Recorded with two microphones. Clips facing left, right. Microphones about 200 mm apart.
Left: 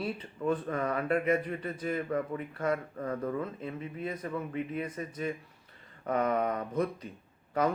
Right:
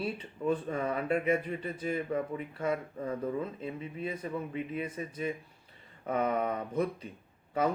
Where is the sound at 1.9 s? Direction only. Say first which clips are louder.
Even; 10° right (ahead or behind).